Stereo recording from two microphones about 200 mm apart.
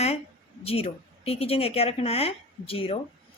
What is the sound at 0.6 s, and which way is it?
Speech, 30° left (ahead or behind).